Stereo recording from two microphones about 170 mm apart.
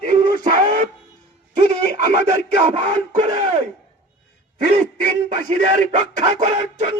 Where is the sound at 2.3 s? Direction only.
45° right (ahead or behind).